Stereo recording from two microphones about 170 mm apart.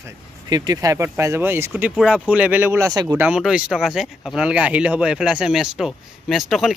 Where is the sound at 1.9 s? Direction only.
Centre (ahead or behind); by 3.2 s 20° right (ahead or behind).